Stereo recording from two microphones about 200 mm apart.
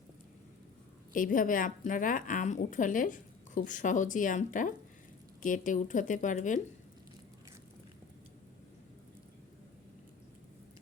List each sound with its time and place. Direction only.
1.1 s a woman's voice: 40° left (ahead or behind)